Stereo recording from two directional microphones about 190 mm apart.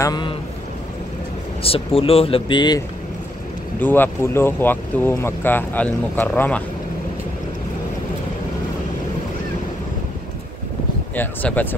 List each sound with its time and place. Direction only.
0.0 s speech: 25° left (ahead or behind)
1.6 s speech: 30° left (ahead or behind)
3.8 s speech: 10° left (ahead or behind)
11.1 s speech: 10° left (ahead or behind)